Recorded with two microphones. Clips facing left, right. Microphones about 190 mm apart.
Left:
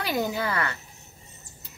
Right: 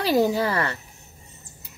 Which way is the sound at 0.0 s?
35° right (ahead or behind).